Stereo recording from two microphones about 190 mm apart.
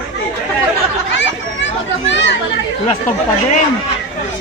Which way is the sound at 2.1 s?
70° left (ahead or behind).